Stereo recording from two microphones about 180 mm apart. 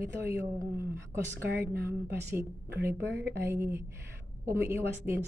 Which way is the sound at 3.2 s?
15° right (ahead or behind).